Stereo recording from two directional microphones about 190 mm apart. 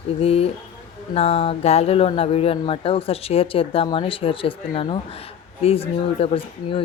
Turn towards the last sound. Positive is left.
turn(degrees=30)  # may be behind; listen again after turning